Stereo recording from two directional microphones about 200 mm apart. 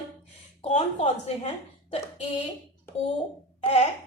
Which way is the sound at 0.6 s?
35° left (ahead or behind).